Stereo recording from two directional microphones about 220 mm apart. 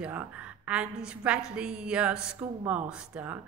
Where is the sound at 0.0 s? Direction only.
5° right (ahead or behind).